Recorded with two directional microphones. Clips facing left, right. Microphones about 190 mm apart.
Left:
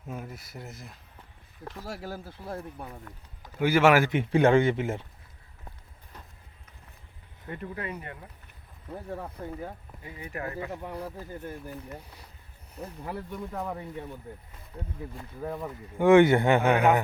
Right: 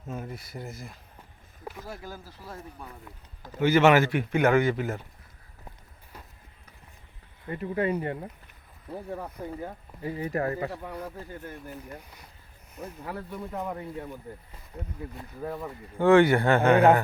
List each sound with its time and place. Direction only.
0.1 s speech: 5° left (ahead or behind)
1.8 s speech: 80° left; by 2.6 s 60° left (ahead or behind)
3.6 s speech: 10° left (ahead or behind)
4.1 s speech: 25° left (ahead or behind)
7.4 s speech: centre (ahead or behind)
7.8 s speech: 30° right (ahead or behind)
9.4 s speech: 10° right (ahead or behind)
10.0 s speech: 35° right (ahead or behind)
12.7 s speech: 30° left (ahead or behind)
13.3 s speech: centre (ahead or behind)
15.4 s speech: centre (ahead or behind)
16.0 s speech: 15° left (ahead or behind)